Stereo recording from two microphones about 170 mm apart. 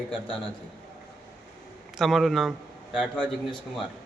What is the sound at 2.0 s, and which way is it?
A man's voice, centre (ahead or behind).